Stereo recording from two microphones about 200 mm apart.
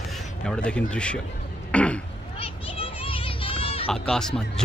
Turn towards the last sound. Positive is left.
turn(degrees=0)  # may be behind; listen again after turning